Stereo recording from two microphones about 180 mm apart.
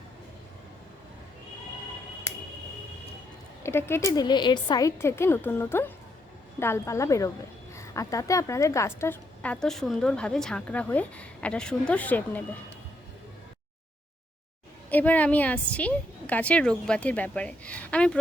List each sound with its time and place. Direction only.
3.6 s a woman's voice: 15° left (ahead or behind)
14.8 s a woman's voice: 10° left (ahead or behind)